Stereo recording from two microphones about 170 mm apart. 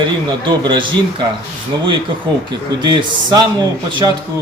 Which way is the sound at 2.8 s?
25° right (ahead or behind).